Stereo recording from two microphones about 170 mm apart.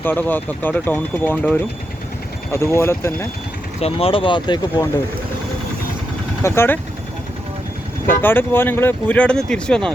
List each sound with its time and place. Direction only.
0.0 s speech: 10° left (ahead or behind)
3.8 s speech: 35° left (ahead or behind)
6.4 s speech: 15° left (ahead or behind)
8.2 s speech: 10° left (ahead or behind)